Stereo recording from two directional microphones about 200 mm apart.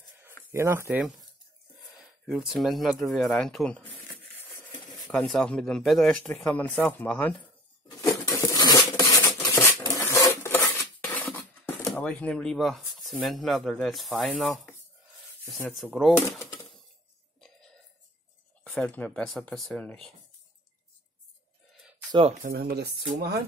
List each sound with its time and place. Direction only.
0.5 s speech: 10° right (ahead or behind); by 3.9 s 5° left (ahead or behind)
4.4 s a sound: 10° left (ahead or behind)
4.8 s speech: centre (ahead or behind)
8.0 s a sound: 15° left (ahead or behind)
11.1 s speech: 10° left (ahead or behind)
15.8 s speech: centre (ahead or behind)
17.4 s music: centre (ahead or behind)
18.6 s speech: 5° left (ahead or behind)
22.4 s speech: 50° right (ahead or behind)